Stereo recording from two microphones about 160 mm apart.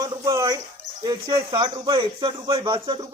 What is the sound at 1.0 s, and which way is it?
Speech, 20° right (ahead or behind).